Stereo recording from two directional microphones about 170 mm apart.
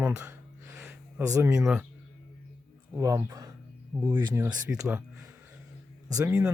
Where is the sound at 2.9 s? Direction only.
15° right (ahead or behind).